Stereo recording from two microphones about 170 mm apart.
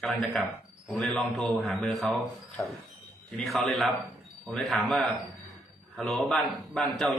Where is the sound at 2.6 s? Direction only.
15° left (ahead or behind).